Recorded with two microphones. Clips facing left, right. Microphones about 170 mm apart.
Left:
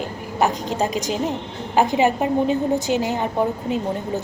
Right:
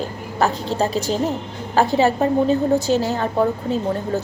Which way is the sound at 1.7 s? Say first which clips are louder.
Right 1 dB; 15° left (ahead or behind).